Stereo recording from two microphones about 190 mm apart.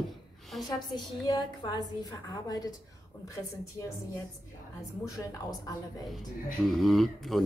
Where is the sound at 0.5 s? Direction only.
Centre (ahead or behind).